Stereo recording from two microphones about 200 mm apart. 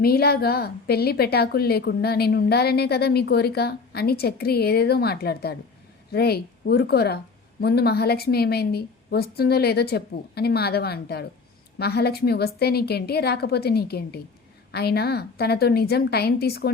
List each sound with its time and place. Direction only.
0.0 s a woman's voice: 50° left (ahead or behind)